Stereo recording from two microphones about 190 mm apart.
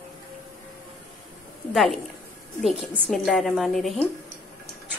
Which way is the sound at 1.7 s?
Centre (ahead or behind).